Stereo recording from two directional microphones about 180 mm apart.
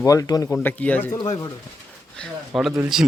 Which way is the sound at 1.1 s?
20° left (ahead or behind).